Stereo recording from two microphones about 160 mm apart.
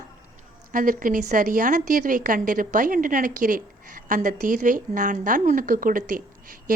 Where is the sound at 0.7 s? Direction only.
60° right (ahead or behind).